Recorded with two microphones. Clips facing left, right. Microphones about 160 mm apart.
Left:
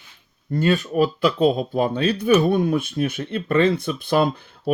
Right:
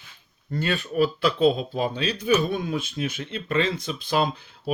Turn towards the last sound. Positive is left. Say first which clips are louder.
# left 5 dB
turn(degrees=55)  # may be behind; listen again after turning